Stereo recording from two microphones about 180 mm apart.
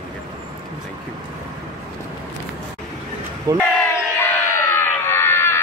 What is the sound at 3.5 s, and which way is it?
Speech, 20° right (ahead or behind).